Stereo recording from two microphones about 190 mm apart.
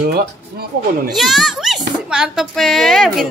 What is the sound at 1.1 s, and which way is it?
Speech, centre (ahead or behind).